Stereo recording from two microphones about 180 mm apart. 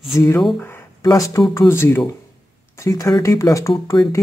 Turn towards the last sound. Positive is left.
turn(degrees=20)  # may be behind; listen again after turning